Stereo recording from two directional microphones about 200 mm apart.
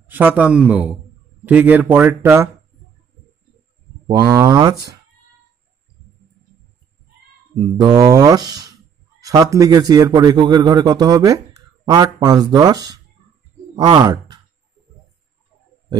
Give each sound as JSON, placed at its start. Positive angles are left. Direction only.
{"t": 0.0, "sound": "speech", "side_deg": -10}
{"t": 4.3, "sound": "a man's voice", "side_deg": -20}
{"t": 7.7, "sound": "a man's voice", "side_deg": -20}
{"t": 14.0, "sound": "a sound", "side_deg": -20}